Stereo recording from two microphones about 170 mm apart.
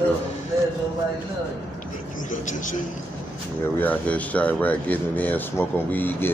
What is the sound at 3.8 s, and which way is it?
Speech, 10° left (ahead or behind).